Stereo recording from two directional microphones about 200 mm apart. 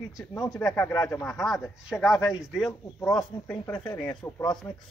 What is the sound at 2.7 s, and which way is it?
Speech, 15° left (ahead or behind).